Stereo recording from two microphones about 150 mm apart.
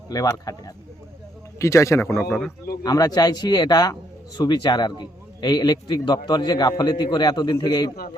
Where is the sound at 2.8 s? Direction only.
25° left (ahead or behind).